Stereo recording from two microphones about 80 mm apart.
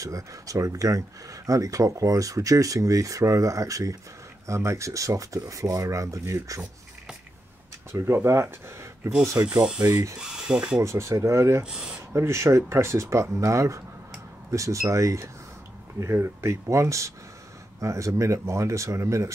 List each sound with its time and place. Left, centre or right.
0.0 s speech: right
7.9 s speech: right
10.2 s speech: centre
10.8 s speech: right